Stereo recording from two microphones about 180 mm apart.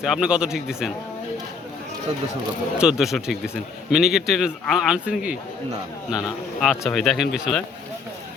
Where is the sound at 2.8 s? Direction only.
5° right (ahead or behind).